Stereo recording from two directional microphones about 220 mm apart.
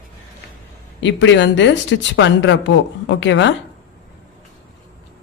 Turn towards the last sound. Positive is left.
turn(degrees=55)  # may be behind; listen again after turning